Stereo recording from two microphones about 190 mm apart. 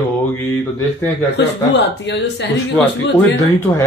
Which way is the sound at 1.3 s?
65° left (ahead or behind).